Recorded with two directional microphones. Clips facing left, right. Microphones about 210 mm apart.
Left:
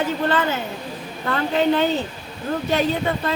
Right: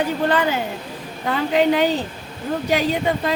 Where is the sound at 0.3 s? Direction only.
15° right (ahead or behind).